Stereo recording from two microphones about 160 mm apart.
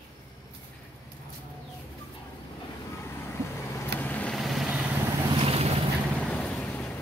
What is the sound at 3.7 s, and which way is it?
Vehicle, 10° left (ahead or behind).